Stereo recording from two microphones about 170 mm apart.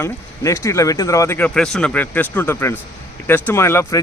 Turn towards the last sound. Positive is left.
turn(degrees=15)  # may be behind; listen again after turning